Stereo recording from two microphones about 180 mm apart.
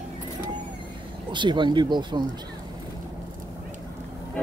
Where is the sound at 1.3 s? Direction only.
25° right (ahead or behind).